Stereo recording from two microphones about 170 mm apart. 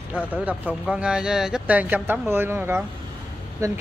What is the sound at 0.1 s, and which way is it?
Speech, 10° right (ahead or behind).